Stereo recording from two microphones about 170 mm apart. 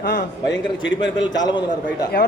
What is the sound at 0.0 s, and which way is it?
Speech, 60° left (ahead or behind).